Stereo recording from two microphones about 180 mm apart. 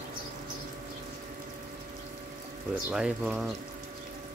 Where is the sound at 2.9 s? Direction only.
5° right (ahead or behind).